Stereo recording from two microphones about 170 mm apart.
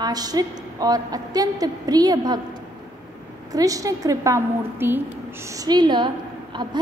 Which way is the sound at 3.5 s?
20° right (ahead or behind).